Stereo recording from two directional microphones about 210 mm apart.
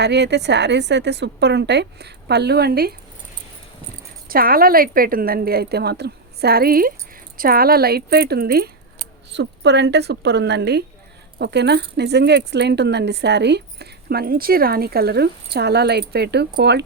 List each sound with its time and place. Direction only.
0.0 s speech: 55° right (ahead or behind)
4.3 s speech: 45° right (ahead or behind)